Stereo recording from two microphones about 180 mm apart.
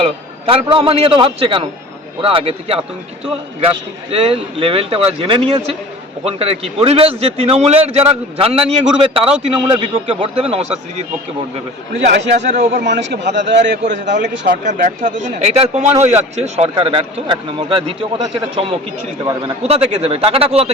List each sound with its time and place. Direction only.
0.0 s speech: 30° right (ahead or behind)
4.1 s speech: 30° right (ahead or behind)
11.9 s a man's voice: 75° right (ahead or behind)
12.3 s a man's voice: 45° right (ahead or behind)
12.8 s a man's voice: 75° right (ahead or behind)
13.8 s a man's voice: 45° right (ahead or behind)
19.2 s a man's voice: 20° right (ahead or behind)
19.6 s speech: 35° right (ahead or behind)